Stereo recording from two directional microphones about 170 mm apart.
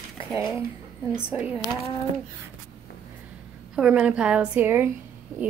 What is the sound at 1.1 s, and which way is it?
Speech, 10° right (ahead or behind).